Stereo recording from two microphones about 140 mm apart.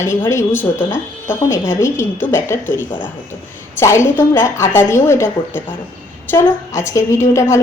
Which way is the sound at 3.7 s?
20° left (ahead or behind).